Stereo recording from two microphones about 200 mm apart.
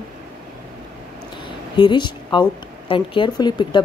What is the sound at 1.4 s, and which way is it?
A woman's voice, 20° left (ahead or behind).